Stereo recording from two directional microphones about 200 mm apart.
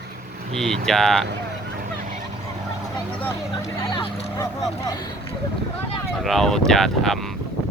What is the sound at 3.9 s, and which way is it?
Vehicle, 25° left (ahead or behind).